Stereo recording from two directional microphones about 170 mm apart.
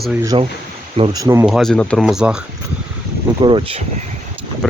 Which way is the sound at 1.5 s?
Centre (ahead or behind).